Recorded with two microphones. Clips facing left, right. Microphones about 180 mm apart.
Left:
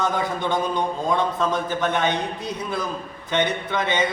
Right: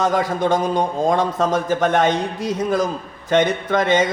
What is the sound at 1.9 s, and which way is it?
A man's voice, 90° right.